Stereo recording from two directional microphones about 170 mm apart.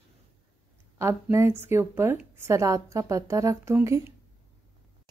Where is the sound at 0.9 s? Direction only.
15° right (ahead or behind).